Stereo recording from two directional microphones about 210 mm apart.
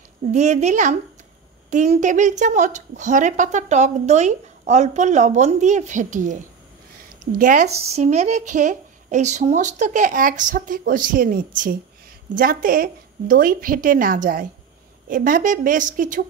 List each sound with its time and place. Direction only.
0.3 s a woman's voice: 35° right (ahead or behind)
7.3 s a woman's voice: 40° right (ahead or behind)